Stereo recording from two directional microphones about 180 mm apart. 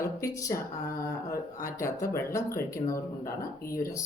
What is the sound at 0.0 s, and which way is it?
Speech, 15° left (ahead or behind).